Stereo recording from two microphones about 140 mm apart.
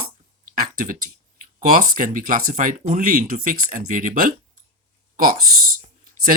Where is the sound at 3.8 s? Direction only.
70° right (ahead or behind).